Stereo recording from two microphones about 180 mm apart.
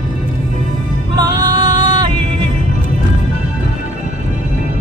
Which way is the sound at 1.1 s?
25° right (ahead or behind).